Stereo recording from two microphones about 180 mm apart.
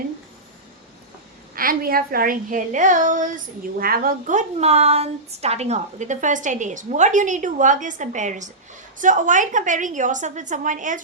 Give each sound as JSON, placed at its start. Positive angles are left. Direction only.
{"t": 1.5, "sound": "a woman's voice", "side_deg": -55}